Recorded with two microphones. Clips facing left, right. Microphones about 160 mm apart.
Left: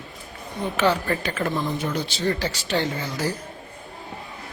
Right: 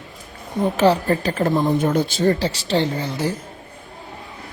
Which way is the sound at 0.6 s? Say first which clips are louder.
Right 6 dB; 35° right (ahead or behind).